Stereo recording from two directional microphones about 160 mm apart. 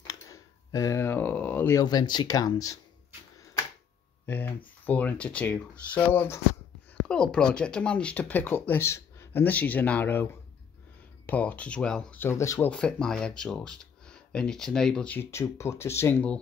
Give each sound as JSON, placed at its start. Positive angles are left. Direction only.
{"t": 0.0, "sound": "a sound", "side_deg": 20}
{"t": 1.8, "sound": "speech", "side_deg": 25}
{"t": 4.3, "sound": "speech", "side_deg": 10}